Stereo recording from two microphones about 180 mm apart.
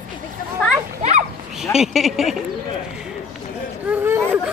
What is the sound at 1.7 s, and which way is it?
Speech, centre (ahead or behind).